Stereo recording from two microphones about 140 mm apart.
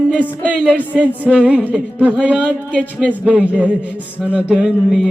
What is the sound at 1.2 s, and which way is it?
Speech, 10° right (ahead or behind).